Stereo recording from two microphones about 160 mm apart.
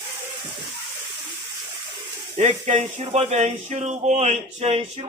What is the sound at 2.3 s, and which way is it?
Speech, 45° right (ahead or behind).